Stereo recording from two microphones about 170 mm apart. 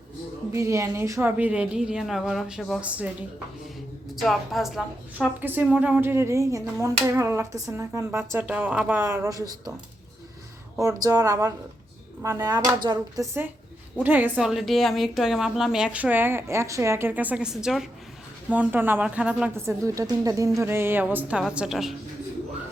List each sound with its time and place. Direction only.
0.5 s a woman's voice: 15° right (ahead or behind)
4.1 s a woman's voice: centre (ahead or behind); by 9.7 s 20° right (ahead or behind)
10.8 s speech: 20° right (ahead or behind)
14.0 s a woman's voice: 10° right (ahead or behind)